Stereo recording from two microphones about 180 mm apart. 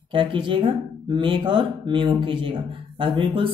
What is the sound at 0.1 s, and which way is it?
Speech, 30° right (ahead or behind).